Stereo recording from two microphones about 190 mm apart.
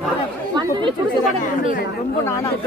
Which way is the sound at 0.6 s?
25° right (ahead or behind).